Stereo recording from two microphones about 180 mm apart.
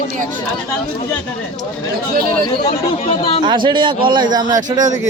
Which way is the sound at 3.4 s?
25° right (ahead or behind).